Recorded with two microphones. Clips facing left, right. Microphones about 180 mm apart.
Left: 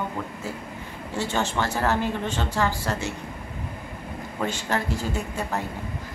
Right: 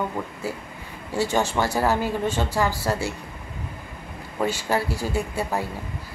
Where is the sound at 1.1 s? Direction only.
10° right (ahead or behind).